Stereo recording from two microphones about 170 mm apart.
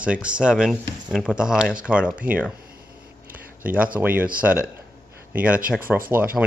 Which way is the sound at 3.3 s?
10° right (ahead or behind).